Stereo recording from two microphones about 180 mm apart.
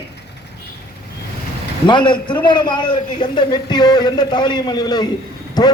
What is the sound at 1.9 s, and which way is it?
A man's voice, 25° left (ahead or behind).